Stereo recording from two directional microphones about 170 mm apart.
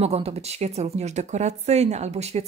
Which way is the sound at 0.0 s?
40° right (ahead or behind).